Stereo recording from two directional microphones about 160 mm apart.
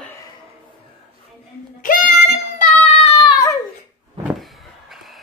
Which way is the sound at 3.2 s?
20° left (ahead or behind).